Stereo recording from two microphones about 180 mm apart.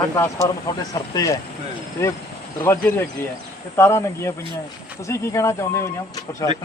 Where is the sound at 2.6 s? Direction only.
10° left (ahead or behind).